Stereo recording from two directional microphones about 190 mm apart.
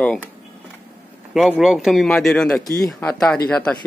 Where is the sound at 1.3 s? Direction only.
5° right (ahead or behind).